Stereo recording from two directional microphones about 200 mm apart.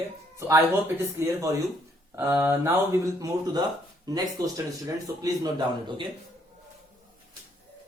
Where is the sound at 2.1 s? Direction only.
10° right (ahead or behind).